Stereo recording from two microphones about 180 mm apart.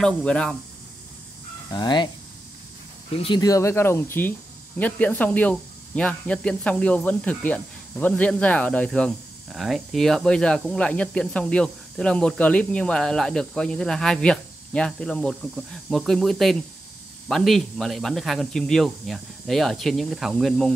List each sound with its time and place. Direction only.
0.0 s speech: 5° left (ahead or behind)
1.7 s speech: 25° left (ahead or behind)
3.2 s speech: 25° left (ahead or behind); by 20.7 s centre (ahead or behind)